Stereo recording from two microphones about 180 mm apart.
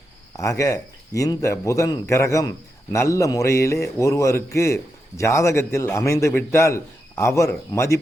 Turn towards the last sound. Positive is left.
turn(degrees=15)  # may be behind; listen again after turning